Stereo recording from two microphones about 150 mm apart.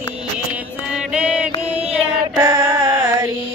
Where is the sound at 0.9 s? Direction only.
5° right (ahead or behind).